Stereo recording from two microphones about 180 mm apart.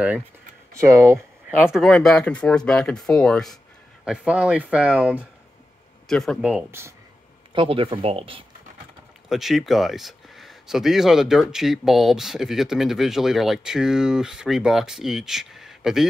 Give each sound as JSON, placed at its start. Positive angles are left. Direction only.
{"t": 0.7, "sound": "speech", "side_deg": -15}
{"t": 1.6, "sound": "speech", "side_deg": 0}
{"t": 7.5, "sound": "speech", "side_deg": -30}
{"t": 9.3, "sound": "speech", "side_deg": 0}